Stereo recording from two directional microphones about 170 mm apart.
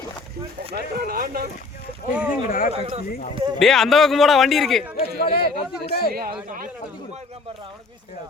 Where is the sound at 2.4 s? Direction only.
55° left (ahead or behind).